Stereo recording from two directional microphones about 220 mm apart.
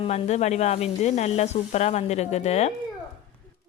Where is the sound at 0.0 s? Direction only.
30° left (ahead or behind).